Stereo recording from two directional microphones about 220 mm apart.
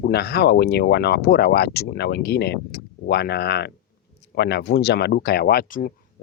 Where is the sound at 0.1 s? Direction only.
45° left (ahead or behind).